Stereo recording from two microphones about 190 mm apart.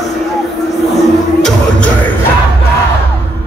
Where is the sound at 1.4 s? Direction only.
5° left (ahead or behind).